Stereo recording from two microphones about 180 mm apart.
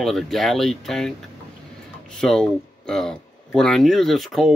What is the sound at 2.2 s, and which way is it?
Speech, 5° left (ahead or behind).